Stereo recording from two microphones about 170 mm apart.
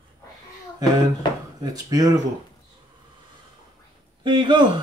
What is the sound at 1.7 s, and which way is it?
Speech, 20° right (ahead or behind).